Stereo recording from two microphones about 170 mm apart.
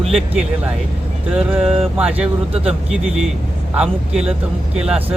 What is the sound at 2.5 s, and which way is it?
Speech, 35° right (ahead or behind).